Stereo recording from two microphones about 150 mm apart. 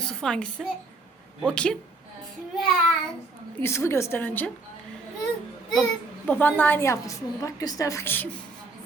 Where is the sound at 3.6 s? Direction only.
15° left (ahead or behind).